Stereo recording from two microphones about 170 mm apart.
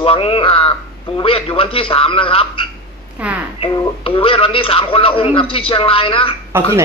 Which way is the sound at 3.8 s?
30° left (ahead or behind).